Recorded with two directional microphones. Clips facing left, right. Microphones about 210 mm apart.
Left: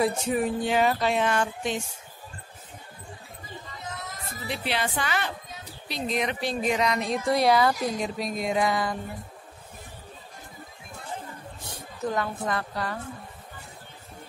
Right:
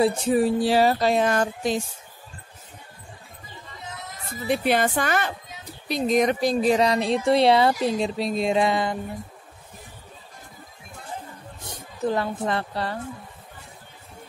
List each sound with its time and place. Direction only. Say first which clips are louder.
0.0 s a sound: right 5 dB; 35° right (ahead or behind)
4.5 s a woman's voice: right 8 dB; 50° right (ahead or behind); by 8.9 s 25° right (ahead or behind)
12.1 s speech: right 4 dB; 30° right (ahead or behind)